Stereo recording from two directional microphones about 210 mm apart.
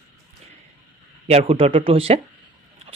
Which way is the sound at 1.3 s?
30° right (ahead or behind).